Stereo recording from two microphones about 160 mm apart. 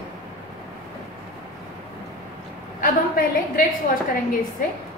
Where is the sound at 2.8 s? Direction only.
60° left (ahead or behind).